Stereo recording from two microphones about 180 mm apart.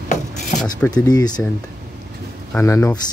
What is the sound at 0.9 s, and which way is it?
Speech, 20° left (ahead or behind).